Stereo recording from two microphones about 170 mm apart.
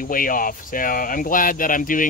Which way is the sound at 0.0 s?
55° left (ahead or behind).